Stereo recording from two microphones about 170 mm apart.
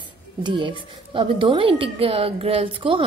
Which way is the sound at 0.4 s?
30° right (ahead or behind).